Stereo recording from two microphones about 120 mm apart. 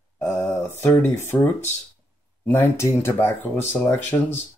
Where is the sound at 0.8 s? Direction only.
20° left (ahead or behind).